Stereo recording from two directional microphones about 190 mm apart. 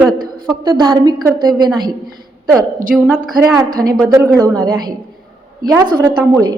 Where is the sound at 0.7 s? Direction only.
20° right (ahead or behind).